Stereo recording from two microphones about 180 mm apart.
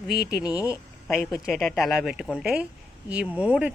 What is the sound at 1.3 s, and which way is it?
Speech, centre (ahead or behind).